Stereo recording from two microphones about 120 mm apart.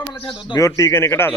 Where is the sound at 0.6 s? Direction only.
25° left (ahead or behind).